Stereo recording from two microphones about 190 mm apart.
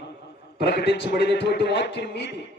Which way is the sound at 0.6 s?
60° left (ahead or behind).